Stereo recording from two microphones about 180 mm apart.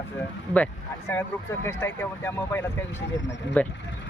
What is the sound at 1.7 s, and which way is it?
Speech, 15° left (ahead or behind).